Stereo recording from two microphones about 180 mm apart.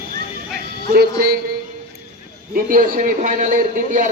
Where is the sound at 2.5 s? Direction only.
50° right (ahead or behind).